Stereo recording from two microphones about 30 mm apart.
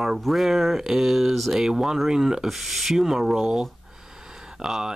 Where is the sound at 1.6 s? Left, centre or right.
Centre.